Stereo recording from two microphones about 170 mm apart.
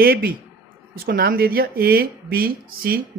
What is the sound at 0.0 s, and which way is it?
A woman's voice, 60° right (ahead or behind).